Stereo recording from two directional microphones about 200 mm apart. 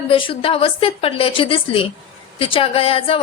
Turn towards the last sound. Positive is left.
turn(degrees=25)  # may be behind; listen again after turning